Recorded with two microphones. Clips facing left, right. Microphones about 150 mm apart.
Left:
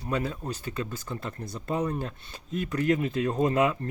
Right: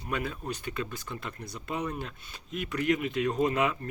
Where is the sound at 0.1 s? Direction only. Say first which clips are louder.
Left 3 dB; 30° left (ahead or behind).